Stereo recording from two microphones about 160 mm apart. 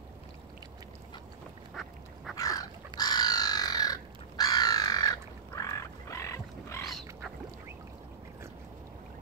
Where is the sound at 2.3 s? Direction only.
20° left (ahead or behind).